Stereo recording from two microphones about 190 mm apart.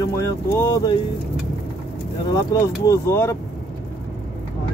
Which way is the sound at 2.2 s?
20° left (ahead or behind).